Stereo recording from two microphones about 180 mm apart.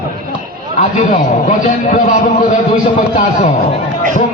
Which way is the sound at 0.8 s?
45° left (ahead or behind).